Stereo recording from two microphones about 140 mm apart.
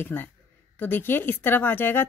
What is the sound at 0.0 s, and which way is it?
Speech, 15° left (ahead or behind).